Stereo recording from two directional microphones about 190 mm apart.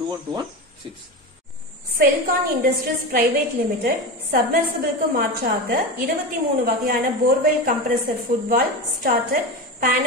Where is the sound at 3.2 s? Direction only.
50° right (ahead or behind).